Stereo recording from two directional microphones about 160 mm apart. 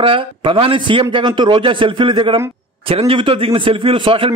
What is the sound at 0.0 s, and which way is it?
A man's voice, 35° right (ahead or behind).